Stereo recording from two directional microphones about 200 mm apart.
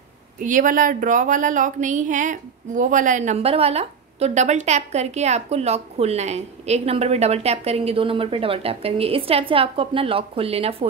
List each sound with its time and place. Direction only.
0.4 s a woman's voice: 40° right (ahead or behind)